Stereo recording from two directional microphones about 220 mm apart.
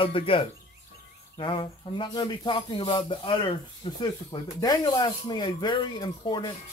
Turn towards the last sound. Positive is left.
turn(degrees=20)  # may be behind; listen again after turning